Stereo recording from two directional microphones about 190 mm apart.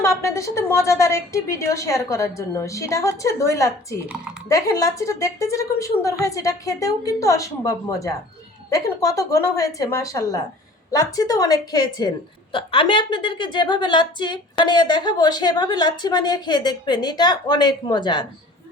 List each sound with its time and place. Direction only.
0.0 s a woman's voice: 15° left (ahead or behind)
4.1 s speech: 5° right (ahead or behind)
4.4 s a woman's voice: 15° left (ahead or behind)